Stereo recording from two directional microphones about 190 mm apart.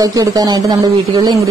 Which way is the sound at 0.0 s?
20° right (ahead or behind).